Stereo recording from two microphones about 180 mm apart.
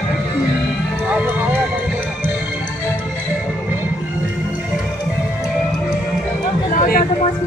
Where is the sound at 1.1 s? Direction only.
10° right (ahead or behind).